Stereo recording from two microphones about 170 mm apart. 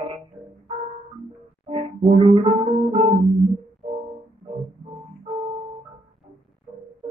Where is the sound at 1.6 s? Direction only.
35° right (ahead or behind).